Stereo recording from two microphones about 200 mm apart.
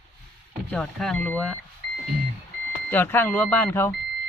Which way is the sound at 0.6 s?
5° left (ahead or behind).